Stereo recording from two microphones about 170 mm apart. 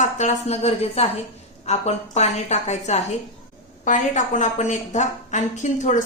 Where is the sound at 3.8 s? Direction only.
45° left (ahead or behind).